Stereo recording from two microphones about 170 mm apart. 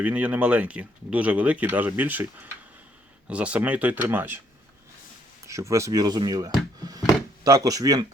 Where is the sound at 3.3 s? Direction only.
5° right (ahead or behind).